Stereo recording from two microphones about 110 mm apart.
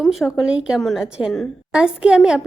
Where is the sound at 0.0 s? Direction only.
Centre (ahead or behind).